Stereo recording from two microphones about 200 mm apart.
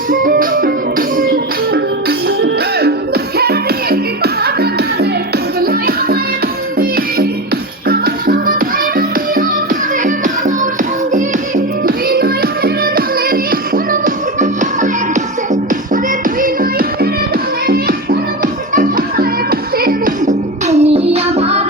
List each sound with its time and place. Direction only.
0.1 s music: 45° right (ahead or behind)